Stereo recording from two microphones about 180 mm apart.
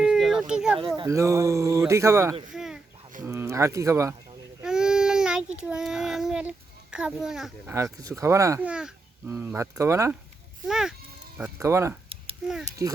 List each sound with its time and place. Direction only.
0.0 s a sound: centre (ahead or behind)
0.9 s speech: 15° right (ahead or behind)
2.5 s a sound: 5° right (ahead or behind)
3.2 s speech: 15° right (ahead or behind)
4.6 s child singing: 5° right (ahead or behind)
7.9 s speech: 20° right (ahead or behind)
10.7 s speech: 5° right (ahead or behind)